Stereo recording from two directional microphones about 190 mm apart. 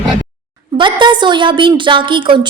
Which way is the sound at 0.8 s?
25° right (ahead or behind).